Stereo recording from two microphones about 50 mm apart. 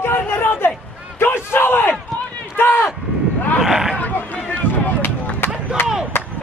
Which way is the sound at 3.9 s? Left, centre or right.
Left.